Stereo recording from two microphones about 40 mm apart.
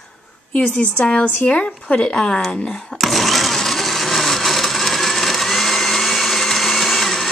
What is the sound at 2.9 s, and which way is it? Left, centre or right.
Blender, centre.